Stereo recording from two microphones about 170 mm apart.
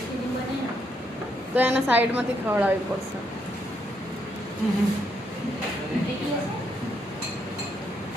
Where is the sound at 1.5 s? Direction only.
10° right (ahead or behind).